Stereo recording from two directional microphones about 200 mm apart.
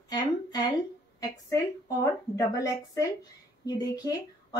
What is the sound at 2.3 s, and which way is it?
A woman's voice, 15° left (ahead or behind).